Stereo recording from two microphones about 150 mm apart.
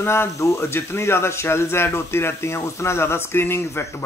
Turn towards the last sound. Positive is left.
turn(degrees=15)  # may be behind; listen again after turning